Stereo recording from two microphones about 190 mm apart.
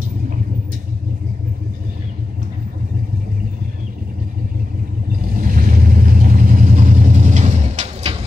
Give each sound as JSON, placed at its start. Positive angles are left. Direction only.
{"t": 5.2, "sound": "vehicle", "side_deg": -45}